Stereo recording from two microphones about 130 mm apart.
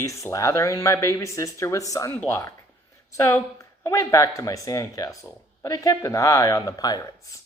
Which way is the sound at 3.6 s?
20° left (ahead or behind).